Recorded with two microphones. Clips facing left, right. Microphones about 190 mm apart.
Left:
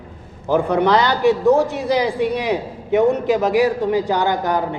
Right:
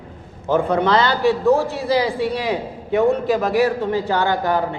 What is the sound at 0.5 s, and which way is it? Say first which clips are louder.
A man's voice: left 1 dB; 15° left (ahead or behind).